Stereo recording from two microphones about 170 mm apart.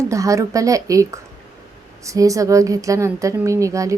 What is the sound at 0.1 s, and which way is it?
A woman's voice, 20° right (ahead or behind).